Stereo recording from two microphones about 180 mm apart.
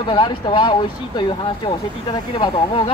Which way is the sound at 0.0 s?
25° left (ahead or behind).